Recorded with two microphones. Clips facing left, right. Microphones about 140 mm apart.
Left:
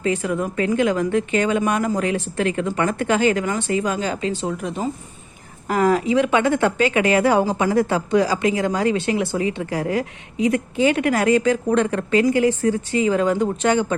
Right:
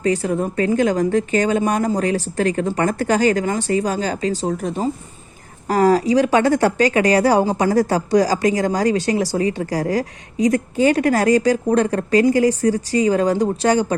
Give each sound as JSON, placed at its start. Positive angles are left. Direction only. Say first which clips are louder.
{"t": 0.0, "sound": "a woman's voice", "louder": "right 3 dB", "side_deg": -35}